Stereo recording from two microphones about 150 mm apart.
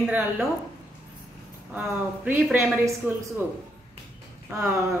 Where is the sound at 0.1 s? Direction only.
10° right (ahead or behind).